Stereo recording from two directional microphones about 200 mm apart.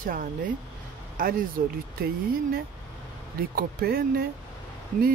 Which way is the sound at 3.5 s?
50° right (ahead or behind).